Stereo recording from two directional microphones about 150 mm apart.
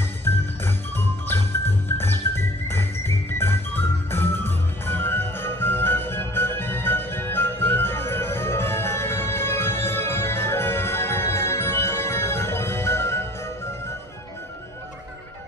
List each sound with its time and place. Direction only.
0.2 s jingle bell: 15° left (ahead or behind)
1.9 s music: 15° left (ahead or behind)